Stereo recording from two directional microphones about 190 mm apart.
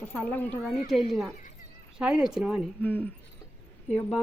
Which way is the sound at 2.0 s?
5° right (ahead or behind).